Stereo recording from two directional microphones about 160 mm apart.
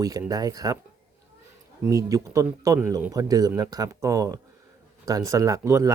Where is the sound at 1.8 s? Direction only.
20° right (ahead or behind).